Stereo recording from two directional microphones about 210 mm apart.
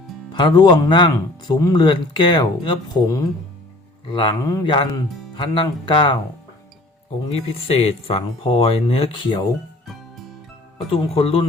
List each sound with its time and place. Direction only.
0.3 s speech: 20° left (ahead or behind)
7.3 s speech: 30° left (ahead or behind)
9.8 s music: centre (ahead or behind)
10.9 s speech: 25° left (ahead or behind)